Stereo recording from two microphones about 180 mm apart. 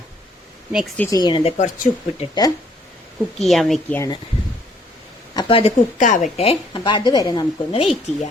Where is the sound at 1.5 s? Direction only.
40° left (ahead or behind).